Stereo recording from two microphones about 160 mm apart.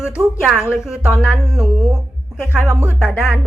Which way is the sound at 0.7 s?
5° right (ahead or behind).